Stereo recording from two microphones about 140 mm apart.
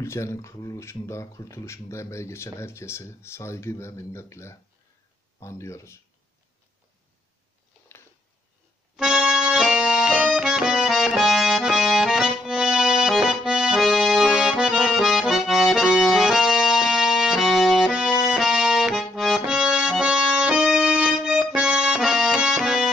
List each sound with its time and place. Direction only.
0.0 s speech: 20° left (ahead or behind)
8.9 s accordion: 5° right (ahead or behind)